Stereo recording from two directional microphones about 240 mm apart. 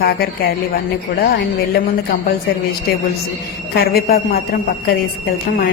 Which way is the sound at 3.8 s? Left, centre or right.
Left.